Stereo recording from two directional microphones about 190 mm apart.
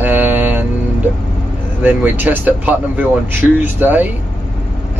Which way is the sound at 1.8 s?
10° right (ahead or behind).